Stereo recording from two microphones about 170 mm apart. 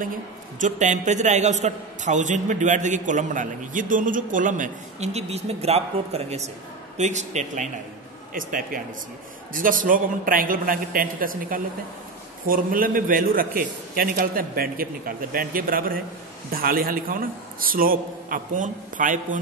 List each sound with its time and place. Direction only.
0.6 s a man's voice: 45° right (ahead or behind)